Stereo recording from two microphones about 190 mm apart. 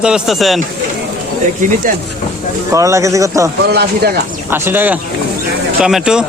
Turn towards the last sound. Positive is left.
turn(degrees=-5)  # may be behind; listen again after turning